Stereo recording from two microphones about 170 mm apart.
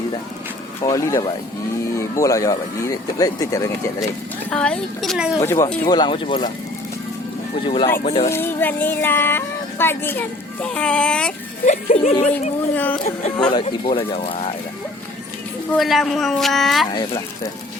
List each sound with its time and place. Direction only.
0.8 s speech: 20° left (ahead or behind)
4.4 s speech: 5° left (ahead or behind)
5.4 s speech: 20° left (ahead or behind)
7.6 s speech: 30° left (ahead or behind)
8.3 s speech: 10° left (ahead or behind)
11.6 s speech: 40° left (ahead or behind)
12.7 s speech: 10° left (ahead or behind)
13.5 s speech: 30° left (ahead or behind)
15.7 s speech: centre (ahead or behind)